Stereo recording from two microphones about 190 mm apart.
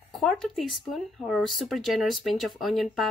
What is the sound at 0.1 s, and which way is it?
Speech, centre (ahead or behind).